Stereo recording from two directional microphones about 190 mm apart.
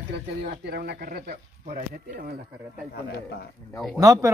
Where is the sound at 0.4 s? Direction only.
55° right (ahead or behind).